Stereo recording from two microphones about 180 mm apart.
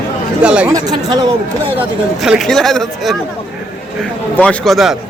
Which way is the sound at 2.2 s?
Centre (ahead or behind).